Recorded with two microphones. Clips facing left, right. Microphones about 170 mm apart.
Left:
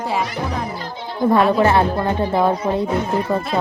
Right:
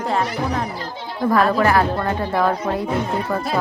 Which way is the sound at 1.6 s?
25° left (ahead or behind).